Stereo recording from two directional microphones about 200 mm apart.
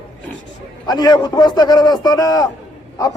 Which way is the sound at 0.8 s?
20° left (ahead or behind).